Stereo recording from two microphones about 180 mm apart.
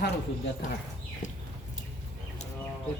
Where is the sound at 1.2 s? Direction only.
40° left (ahead or behind).